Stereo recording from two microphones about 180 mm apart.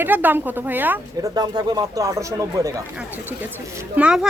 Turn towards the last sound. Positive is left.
turn(degrees=-5)  # may be behind; listen again after turning